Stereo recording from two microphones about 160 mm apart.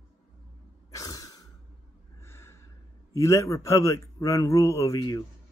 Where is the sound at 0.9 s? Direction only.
20° left (ahead or behind).